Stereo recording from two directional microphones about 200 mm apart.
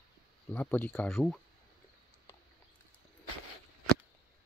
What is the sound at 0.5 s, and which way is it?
Speech, 10° left (ahead or behind).